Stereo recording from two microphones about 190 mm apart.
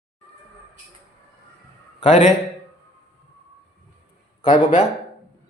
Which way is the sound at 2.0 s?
40° left (ahead or behind).